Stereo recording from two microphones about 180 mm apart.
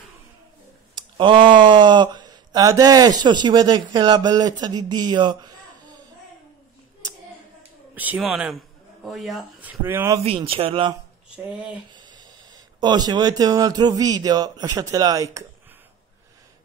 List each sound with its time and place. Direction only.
0.9 s speech: 25° right (ahead or behind)
7.9 s speech: 10° right (ahead or behind)
10.2 s speech: 30° right (ahead or behind)
11.3 s speech: 5° right (ahead or behind)
11.9 s speech: 25° right (ahead or behind)